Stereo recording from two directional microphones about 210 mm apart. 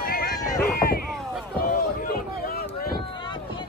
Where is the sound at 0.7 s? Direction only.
45° left (ahead or behind).